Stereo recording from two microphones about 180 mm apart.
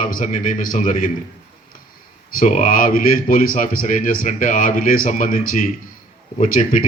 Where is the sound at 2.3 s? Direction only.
50° left (ahead or behind).